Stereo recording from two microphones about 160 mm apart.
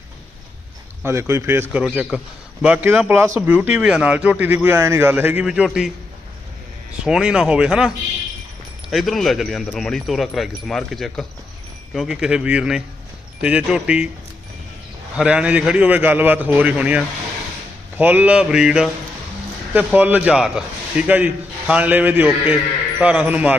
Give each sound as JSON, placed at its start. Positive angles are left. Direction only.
{"t": 1.0, "sound": "a man's voice", "side_deg": -15}
{"t": 1.8, "sound": "a man's voice", "side_deg": -5}
{"t": 7.0, "sound": "a man's voice", "side_deg": -5}
{"t": 15.1, "sound": "a man's voice", "side_deg": -5}